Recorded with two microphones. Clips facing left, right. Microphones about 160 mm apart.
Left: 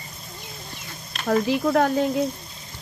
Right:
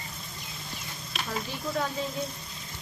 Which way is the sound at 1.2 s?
80° left.